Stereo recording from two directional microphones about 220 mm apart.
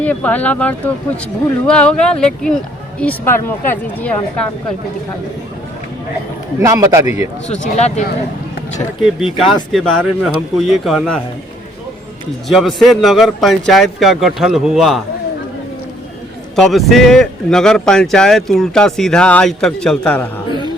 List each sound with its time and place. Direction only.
0.0 s speech: 5° left (ahead or behind)
6.7 s a man's voice: 15° right (ahead or behind)
7.4 s speech: 30° left (ahead or behind)
9.0 s speech: centre (ahead or behind)
12.5 s speech: centre (ahead or behind)
16.6 s speech: centre (ahead or behind)